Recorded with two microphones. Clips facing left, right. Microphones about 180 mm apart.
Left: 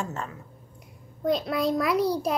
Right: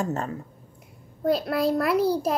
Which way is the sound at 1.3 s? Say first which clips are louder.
Right 2 dB; 5° right (ahead or behind).